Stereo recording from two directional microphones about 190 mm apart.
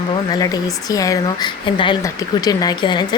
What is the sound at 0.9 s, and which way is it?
Speech, 20° left (ahead or behind).